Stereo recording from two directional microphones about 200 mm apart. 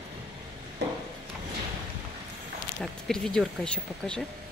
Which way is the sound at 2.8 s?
Centre (ahead or behind).